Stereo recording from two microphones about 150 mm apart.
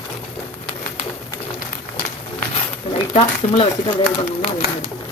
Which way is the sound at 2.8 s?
45° left (ahead or behind).